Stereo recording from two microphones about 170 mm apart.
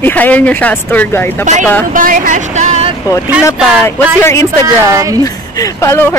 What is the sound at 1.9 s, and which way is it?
Speech, 55° right (ahead or behind).